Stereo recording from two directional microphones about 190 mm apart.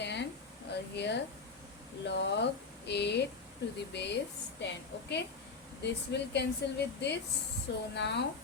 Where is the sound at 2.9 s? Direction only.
65° left (ahead or behind).